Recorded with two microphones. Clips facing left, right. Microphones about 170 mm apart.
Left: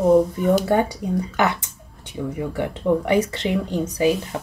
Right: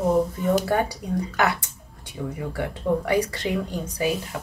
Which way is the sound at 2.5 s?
20° left (ahead or behind).